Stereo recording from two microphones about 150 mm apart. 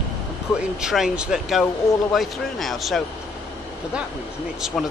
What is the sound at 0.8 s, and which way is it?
Speech, 5° right (ahead or behind).